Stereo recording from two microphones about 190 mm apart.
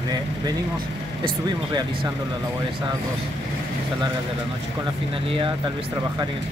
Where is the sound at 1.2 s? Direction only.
20° right (ahead or behind).